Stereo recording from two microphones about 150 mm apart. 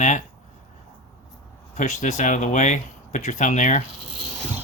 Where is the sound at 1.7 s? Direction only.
55° left (ahead or behind).